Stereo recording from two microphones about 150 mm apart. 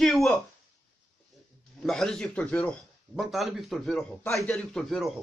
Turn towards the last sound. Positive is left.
turn(degrees=0)  # may be behind; listen again after turning